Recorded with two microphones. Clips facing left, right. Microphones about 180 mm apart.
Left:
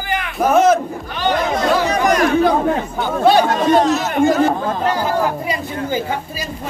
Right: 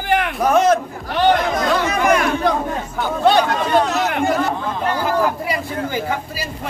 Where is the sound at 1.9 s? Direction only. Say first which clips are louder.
Left 1 dB; 40° left (ahead or behind).